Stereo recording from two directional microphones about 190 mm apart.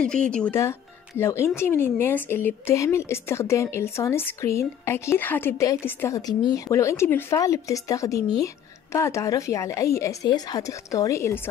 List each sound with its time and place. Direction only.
0.0 s speech: 5° left (ahead or behind)